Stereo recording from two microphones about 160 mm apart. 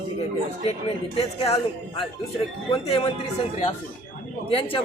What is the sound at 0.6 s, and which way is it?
A man's voice, 40° left (ahead or behind).